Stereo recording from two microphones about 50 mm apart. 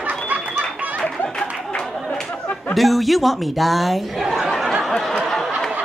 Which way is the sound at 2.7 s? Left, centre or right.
Centre.